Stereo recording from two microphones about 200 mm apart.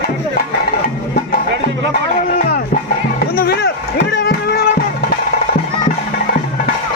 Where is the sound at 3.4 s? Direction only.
55° left (ahead or behind).